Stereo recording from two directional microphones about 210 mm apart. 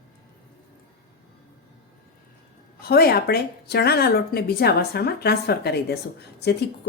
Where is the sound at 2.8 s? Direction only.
45° left (ahead or behind).